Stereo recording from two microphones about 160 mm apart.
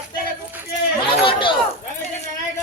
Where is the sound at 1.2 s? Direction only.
30° left (ahead or behind).